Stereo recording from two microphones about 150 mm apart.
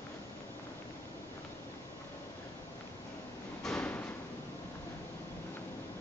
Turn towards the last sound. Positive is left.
turn(degrees=10)  # may be behind; listen again after turning